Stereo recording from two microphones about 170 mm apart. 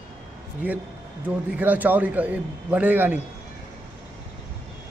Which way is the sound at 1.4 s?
10° right (ahead or behind).